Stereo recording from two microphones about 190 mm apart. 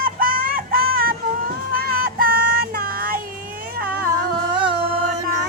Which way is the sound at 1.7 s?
50° right (ahead or behind).